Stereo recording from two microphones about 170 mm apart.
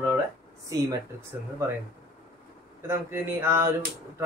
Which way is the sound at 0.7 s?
20° right (ahead or behind).